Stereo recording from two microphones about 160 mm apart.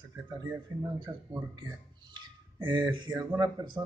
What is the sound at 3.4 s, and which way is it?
Speech, 25° right (ahead or behind).